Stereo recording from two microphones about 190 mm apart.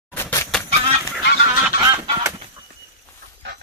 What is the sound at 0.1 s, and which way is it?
Chicken, 10° left (ahead or behind).